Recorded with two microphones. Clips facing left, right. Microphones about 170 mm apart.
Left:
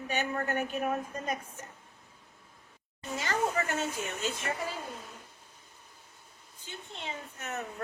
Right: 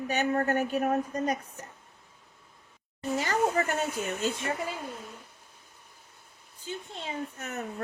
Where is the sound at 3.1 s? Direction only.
35° right (ahead or behind).